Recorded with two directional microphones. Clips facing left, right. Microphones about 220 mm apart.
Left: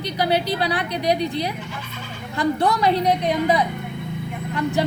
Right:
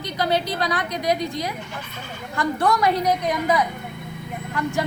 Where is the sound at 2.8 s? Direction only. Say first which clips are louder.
Left 2 dB; 25° left (ahead or behind).